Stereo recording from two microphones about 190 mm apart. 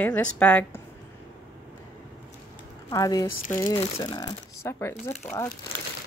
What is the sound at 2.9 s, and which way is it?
Speech, 20° left (ahead or behind).